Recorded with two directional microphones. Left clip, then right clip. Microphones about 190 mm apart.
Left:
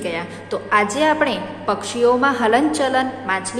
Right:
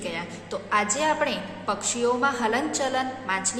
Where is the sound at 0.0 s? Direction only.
5° left (ahead or behind).